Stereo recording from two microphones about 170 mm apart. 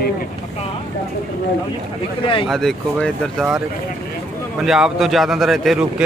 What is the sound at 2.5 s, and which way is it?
Speech, centre (ahead or behind).